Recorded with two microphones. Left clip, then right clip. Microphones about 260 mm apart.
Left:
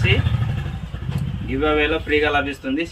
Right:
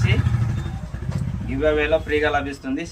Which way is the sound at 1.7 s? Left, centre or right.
Centre.